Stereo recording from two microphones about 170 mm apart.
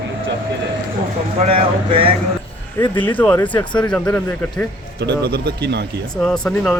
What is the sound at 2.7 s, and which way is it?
Speech, 15° left (ahead or behind).